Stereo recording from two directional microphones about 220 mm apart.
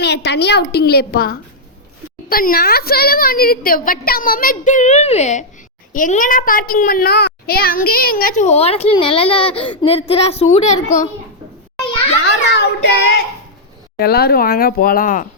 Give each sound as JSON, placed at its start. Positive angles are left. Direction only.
{"t": 0.0, "sound": "a woman's voice", "side_deg": 50}
{"t": 12.2, "sound": "a child's voice", "side_deg": 50}